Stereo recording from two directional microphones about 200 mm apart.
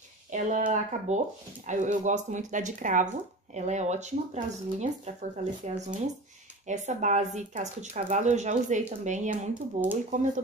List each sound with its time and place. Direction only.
0.3 s speech: 40° right (ahead or behind)